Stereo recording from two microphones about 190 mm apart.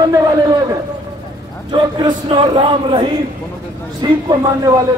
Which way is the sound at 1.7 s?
25° right (ahead or behind).